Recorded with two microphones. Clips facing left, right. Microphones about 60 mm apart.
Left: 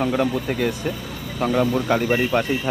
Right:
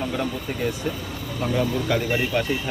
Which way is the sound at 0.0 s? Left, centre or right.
Left.